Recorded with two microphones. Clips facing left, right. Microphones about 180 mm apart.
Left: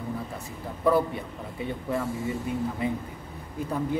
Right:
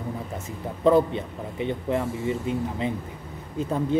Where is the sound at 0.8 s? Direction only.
20° right (ahead or behind).